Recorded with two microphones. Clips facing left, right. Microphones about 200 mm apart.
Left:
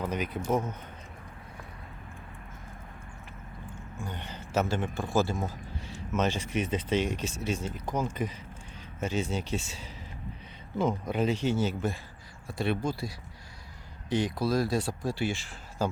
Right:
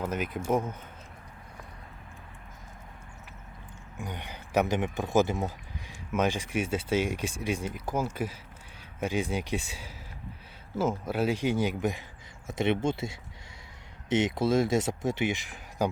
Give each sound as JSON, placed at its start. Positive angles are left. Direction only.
{"t": 0.0, "sound": "speech", "side_deg": -10}
{"t": 4.0, "sound": "speech", "side_deg": -15}